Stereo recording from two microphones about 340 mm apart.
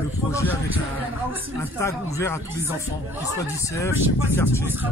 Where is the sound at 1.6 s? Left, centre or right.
Centre.